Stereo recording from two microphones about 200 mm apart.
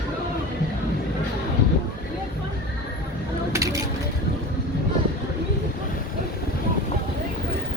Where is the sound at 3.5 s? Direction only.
15° right (ahead or behind).